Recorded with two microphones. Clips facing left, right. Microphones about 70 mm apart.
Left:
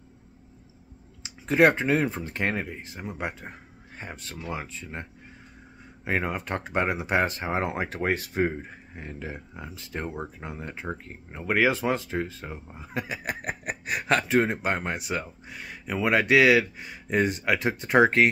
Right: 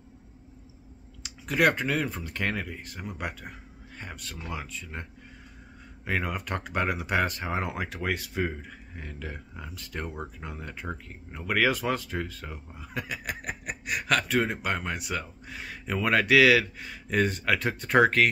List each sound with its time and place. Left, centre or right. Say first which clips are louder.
1.2 s speech: left 4 dB; left
6.0 s speech: left 2 dB; left
8.9 s speech: left 3 dB; left
15.5 s speech: even; centre
16.0 s speech: left 1 dB; centre